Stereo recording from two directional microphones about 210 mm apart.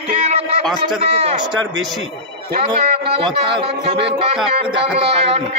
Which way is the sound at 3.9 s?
55° right (ahead or behind).